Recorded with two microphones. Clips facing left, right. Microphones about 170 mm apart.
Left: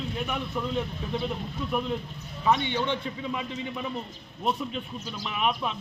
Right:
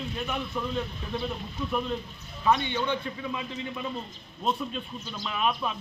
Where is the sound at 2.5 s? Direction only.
20° left (ahead or behind).